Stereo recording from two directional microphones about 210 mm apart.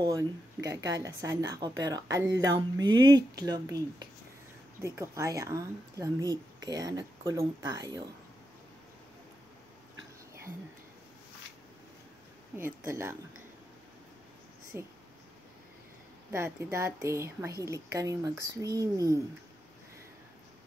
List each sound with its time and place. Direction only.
0.0 s speech: 15° right (ahead or behind)
12.5 s speech: 10° right (ahead or behind)
14.7 s speech: 10° right (ahead or behind)
16.3 s speech: 10° right (ahead or behind)